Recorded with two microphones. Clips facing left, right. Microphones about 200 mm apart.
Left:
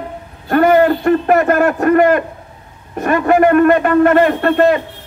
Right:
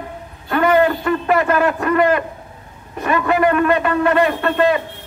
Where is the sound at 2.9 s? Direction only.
45° left (ahead or behind).